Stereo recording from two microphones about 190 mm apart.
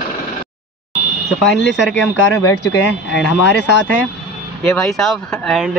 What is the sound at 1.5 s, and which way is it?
Speech, 70° left (ahead or behind).